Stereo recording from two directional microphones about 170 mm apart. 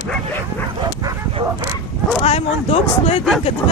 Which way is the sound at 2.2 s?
35° left (ahead or behind).